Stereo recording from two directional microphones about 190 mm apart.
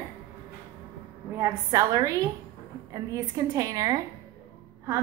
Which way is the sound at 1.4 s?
20° right (ahead or behind).